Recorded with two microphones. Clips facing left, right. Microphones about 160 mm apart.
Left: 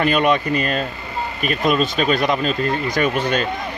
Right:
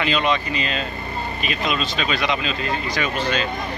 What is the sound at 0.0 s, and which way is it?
Speech, 55° left (ahead or behind).